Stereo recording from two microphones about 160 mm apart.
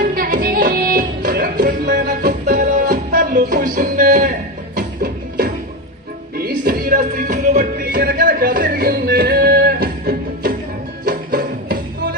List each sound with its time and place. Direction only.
0.2 s music: 60° right (ahead or behind)
4.7 s music: 70° right (ahead or behind)